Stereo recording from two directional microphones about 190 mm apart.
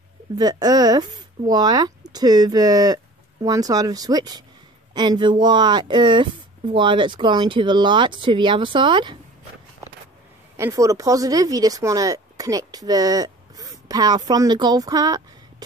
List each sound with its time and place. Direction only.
0.4 s speech: 20° right (ahead or behind)
10.6 s speech: 15° right (ahead or behind)